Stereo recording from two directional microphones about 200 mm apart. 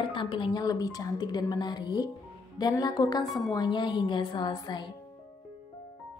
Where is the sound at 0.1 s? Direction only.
25° left (ahead or behind).